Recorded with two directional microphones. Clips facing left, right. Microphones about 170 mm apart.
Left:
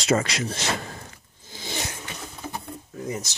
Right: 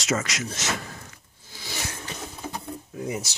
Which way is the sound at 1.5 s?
25° left (ahead or behind).